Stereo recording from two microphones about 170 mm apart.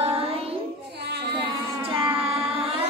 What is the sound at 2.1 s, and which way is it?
Carnatic music, 35° right (ahead or behind).